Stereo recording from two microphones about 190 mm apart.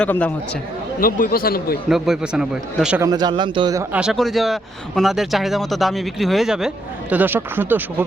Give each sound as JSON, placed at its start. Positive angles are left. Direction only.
{"t": 0.0, "sound": "speech", "side_deg": 10}
{"t": 0.9, "sound": "speech", "side_deg": 50}
{"t": 1.9, "sound": "a man's voice", "side_deg": -5}
{"t": 3.0, "sound": "a man's voice", "side_deg": -20}
{"t": 3.9, "sound": "a man's voice", "side_deg": -5}